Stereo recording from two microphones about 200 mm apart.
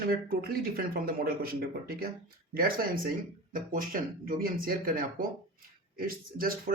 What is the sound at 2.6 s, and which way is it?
Speech, 45° right (ahead or behind).